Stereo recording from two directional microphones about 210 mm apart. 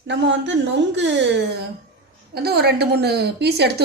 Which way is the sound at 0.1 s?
60° right (ahead or behind).